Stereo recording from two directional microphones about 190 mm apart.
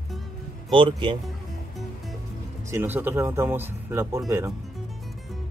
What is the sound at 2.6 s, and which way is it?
Speech, 10° right (ahead or behind).